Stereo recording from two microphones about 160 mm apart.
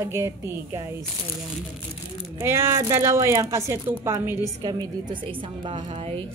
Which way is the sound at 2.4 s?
15° right (ahead or behind).